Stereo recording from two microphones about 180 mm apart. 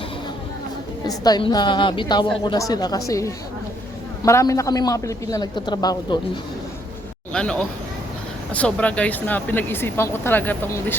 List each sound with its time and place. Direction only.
1.0 s a woman's voice: 20° left (ahead or behind)
7.3 s speech: 5° left (ahead or behind)